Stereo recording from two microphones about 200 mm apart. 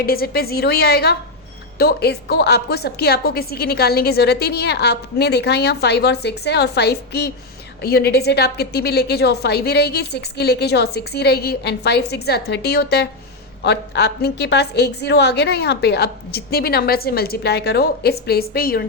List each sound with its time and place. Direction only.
0.0 s a woman's voice: 50° left (ahead or behind)